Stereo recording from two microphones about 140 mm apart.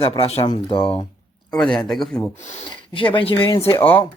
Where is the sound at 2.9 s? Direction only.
35° left (ahead or behind).